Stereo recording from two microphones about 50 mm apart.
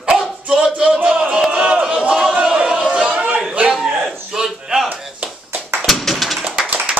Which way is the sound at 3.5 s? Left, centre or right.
Centre.